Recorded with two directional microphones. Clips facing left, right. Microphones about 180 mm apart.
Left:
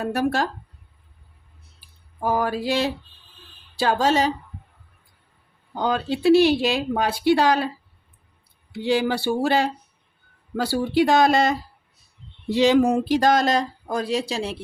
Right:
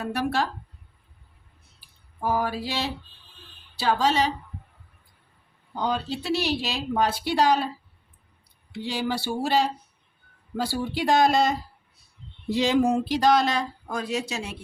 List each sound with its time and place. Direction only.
0.0 s mantra: 45° left (ahead or behind)
2.2 s mantra: 50° left (ahead or behind)
5.9 s speech: 55° left (ahead or behind)
8.9 s speech: 60° left (ahead or behind)
10.6 s speech: 70° left (ahead or behind)
12.5 s speech: 80° left
13.1 s speech: 50° left (ahead or behind); by 14.6 s 30° left (ahead or behind)